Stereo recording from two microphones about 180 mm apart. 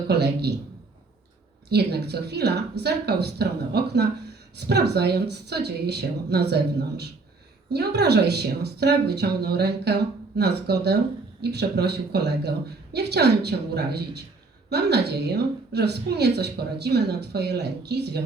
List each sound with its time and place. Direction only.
0.1 s a woman's voice: 65° right (ahead or behind)
1.7 s a woman's voice: 65° right (ahead or behind)